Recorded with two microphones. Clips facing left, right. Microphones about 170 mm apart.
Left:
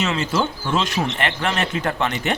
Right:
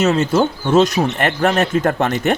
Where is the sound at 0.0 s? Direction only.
45° right (ahead or behind).